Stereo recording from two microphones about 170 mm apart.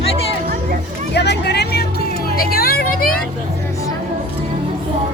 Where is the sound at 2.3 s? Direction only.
65° left (ahead or behind).